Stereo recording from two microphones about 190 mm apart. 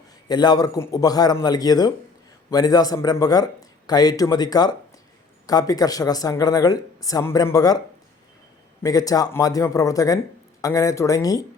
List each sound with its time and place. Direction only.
0.3 s speech: 20° left (ahead or behind)
8.8 s speech: 20° left (ahead or behind)